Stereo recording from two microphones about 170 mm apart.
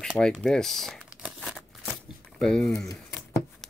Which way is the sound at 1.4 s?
Centre (ahead or behind).